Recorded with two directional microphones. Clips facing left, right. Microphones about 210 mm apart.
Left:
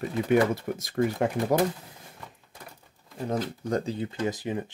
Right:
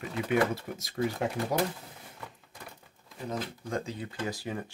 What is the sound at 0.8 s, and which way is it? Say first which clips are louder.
Speech: left 4 dB; 55° left (ahead or behind).